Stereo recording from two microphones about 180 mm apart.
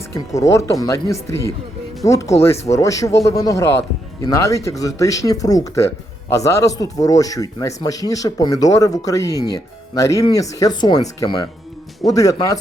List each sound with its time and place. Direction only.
0.1 s speech: 15° left (ahead or behind)
12.1 s speech: 20° left (ahead or behind)